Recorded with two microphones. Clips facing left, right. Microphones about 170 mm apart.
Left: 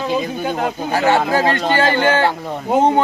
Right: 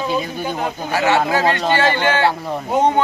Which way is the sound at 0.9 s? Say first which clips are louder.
Left 1 dB; 40° left (ahead or behind).